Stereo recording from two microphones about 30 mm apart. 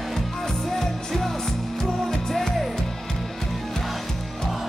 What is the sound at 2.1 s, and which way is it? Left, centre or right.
Music, centre.